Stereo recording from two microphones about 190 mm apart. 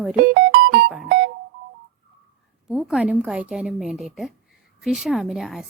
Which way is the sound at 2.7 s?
Centre (ahead or behind).